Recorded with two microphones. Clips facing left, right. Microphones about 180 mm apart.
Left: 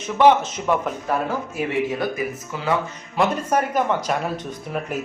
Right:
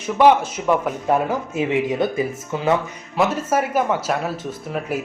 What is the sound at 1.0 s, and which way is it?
Speech, 20° right (ahead or behind).